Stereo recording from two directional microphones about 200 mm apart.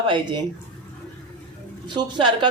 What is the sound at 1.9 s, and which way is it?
Speech, 20° right (ahead or behind).